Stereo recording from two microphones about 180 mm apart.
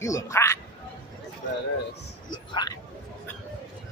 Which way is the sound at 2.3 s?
25° left (ahead or behind).